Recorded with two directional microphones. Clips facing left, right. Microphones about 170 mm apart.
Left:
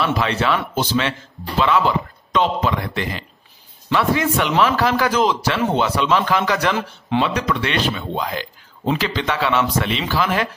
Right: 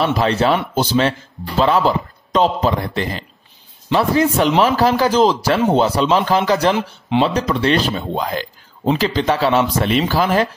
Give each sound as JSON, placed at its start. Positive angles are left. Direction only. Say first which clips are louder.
{"t": 0.0, "sound": "speech", "louder": "right 4 dB", "side_deg": -35}